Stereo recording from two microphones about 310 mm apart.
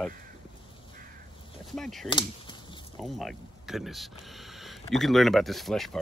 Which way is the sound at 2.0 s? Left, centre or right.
Centre.